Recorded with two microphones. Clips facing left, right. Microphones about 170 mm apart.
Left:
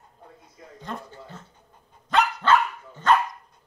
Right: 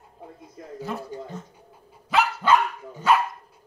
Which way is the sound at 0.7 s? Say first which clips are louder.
Right 5 dB; 5° right (ahead or behind).